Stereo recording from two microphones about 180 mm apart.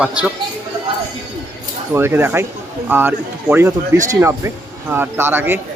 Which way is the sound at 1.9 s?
10° right (ahead or behind).